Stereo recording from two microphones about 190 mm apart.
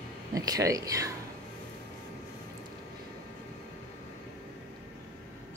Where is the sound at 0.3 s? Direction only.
20° right (ahead or behind).